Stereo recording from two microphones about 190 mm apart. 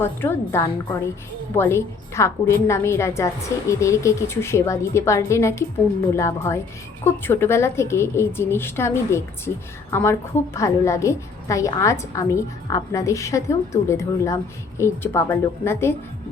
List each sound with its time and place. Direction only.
0.0 s a woman's voice: 10° left (ahead or behind)